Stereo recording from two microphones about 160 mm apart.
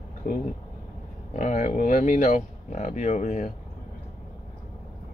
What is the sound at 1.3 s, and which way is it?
Speech, 50° left (ahead or behind).